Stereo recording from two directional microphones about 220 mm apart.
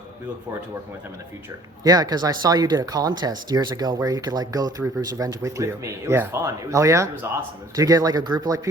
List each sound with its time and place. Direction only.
1.8 s speech: 15° right (ahead or behind)